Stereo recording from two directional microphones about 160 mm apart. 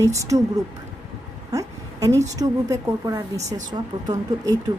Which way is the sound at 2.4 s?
20° right (ahead or behind).